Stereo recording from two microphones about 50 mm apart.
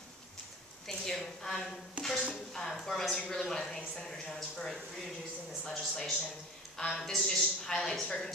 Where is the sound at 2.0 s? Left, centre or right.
Right.